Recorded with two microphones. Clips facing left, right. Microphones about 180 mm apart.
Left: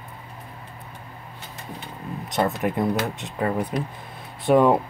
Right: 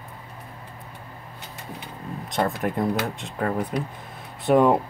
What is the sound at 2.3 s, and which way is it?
Speech, 5° left (ahead or behind).